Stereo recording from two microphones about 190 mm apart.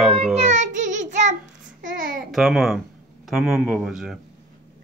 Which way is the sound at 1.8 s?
45° right (ahead or behind).